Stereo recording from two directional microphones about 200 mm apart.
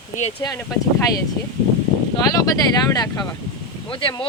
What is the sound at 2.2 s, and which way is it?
Speech, 15° left (ahead or behind).